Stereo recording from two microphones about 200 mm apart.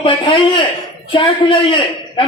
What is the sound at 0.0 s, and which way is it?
A man's voice, 25° left (ahead or behind).